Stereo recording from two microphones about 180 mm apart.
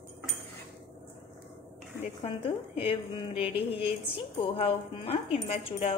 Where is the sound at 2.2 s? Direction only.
30° left (ahead or behind).